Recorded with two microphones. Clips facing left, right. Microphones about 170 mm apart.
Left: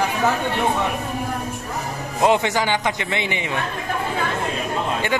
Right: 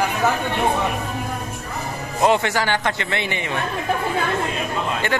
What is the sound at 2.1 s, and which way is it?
A man's voice, 15° left (ahead or behind).